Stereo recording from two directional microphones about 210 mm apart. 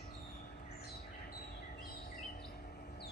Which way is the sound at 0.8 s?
50° left (ahead or behind).